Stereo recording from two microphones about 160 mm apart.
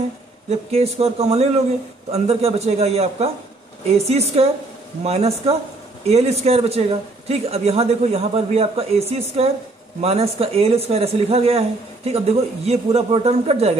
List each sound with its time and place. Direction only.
0.5 s speech: 40° right (ahead or behind)
5.0 s speech: 40° right (ahead or behind)